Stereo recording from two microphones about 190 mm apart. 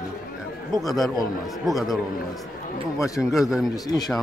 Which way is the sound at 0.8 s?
Centre (ahead or behind).